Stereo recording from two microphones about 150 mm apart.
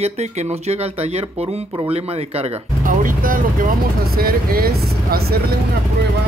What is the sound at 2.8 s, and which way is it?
Speech, 65° right (ahead or behind).